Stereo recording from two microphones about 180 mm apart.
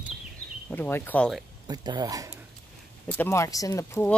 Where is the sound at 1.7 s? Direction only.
20° right (ahead or behind).